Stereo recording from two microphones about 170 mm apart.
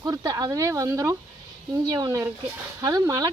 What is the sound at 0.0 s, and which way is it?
Speech, 20° right (ahead or behind).